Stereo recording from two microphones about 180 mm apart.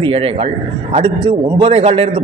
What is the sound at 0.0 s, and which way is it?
A man's voice, 30° right (ahead or behind).